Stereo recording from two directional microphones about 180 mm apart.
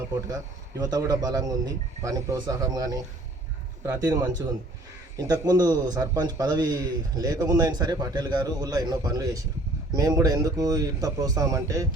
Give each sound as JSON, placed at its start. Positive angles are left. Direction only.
{"t": 0.8, "sound": "a man's voice", "side_deg": -20}